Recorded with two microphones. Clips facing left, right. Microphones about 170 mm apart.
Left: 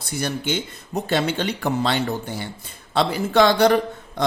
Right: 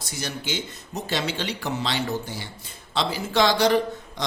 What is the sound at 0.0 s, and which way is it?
Speech, 55° left (ahead or behind).